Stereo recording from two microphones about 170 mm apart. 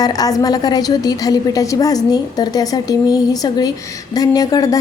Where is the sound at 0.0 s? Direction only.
20° left (ahead or behind).